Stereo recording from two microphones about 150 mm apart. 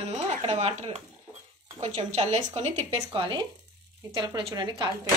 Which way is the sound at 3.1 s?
30° right (ahead or behind).